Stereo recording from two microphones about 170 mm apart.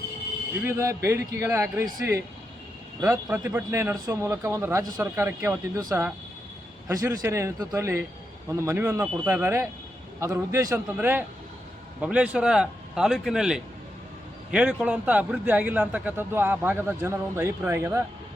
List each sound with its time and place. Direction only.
0.6 s a man's voice: 15° right (ahead or behind)